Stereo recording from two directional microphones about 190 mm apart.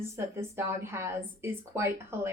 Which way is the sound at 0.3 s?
15° right (ahead or behind).